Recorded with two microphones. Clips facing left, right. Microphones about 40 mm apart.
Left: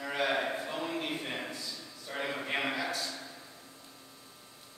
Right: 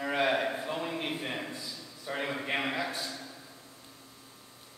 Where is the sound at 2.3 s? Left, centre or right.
Centre.